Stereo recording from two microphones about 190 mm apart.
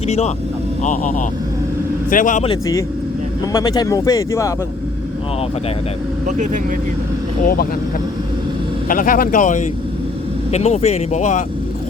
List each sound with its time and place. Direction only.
0.8 s speech: 40° left (ahead or behind)
2.5 s speech: 15° left (ahead or behind)
6.2 s speech: 40° right (ahead or behind)
7.4 s speech: 50° left (ahead or behind)
8.9 s speech: 45° left (ahead or behind)